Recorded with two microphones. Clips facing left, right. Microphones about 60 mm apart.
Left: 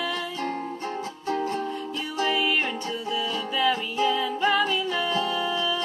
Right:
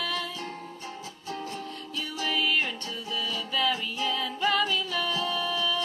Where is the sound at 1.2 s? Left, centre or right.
Left.